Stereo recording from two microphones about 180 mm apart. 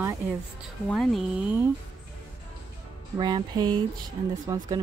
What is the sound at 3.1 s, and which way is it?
Speech, 25° right (ahead or behind).